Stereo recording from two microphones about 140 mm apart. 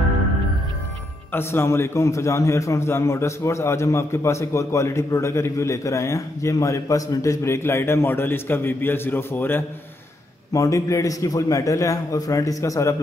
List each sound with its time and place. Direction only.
1.3 s a man's voice: 20° left (ahead or behind)